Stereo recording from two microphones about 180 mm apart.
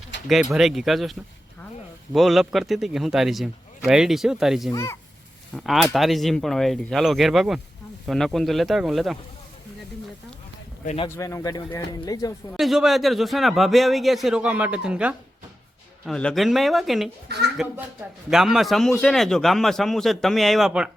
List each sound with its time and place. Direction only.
0.1 s a sound: 80° left
0.5 s a man's voice: centre (ahead or behind)
2.1 s a man's voice: centre (ahead or behind)
4.7 s speech: 15° left (ahead or behind)
5.5 s a man's voice: centre (ahead or behind)
10.8 s speech: 30° left (ahead or behind)
11.2 s speech: 15° left (ahead or behind)
12.5 s a man's voice: centre (ahead or behind)